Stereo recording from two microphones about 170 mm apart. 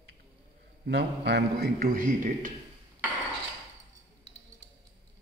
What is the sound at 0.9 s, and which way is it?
A man's voice, 90° right.